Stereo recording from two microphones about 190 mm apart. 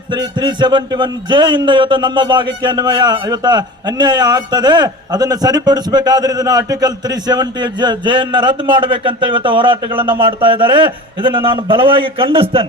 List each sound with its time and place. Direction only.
0.1 s a man's voice: 25° right (ahead or behind)